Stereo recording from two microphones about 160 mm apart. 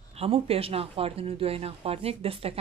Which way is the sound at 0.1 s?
40° right (ahead or behind).